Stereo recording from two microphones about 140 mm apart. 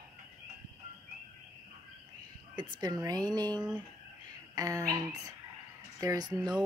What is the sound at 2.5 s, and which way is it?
Speech, 30° right (ahead or behind).